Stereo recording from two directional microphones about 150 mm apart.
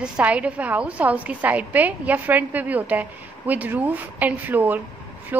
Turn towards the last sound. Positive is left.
turn(degrees=-10)  # may be behind; listen again after turning